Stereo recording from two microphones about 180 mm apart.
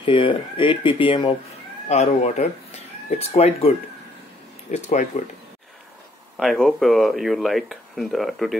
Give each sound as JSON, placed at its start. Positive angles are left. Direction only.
{"t": 0.0, "sound": "speech", "side_deg": 30}
{"t": 1.9, "sound": "speech", "side_deg": 40}
{"t": 6.3, "sound": "speech", "side_deg": 0}